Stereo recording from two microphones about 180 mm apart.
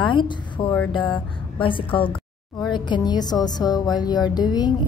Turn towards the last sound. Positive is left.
turn(degrees=25)  # may be behind; listen again after turning